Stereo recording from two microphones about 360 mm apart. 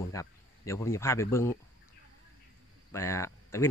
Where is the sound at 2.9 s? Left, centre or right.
Centre.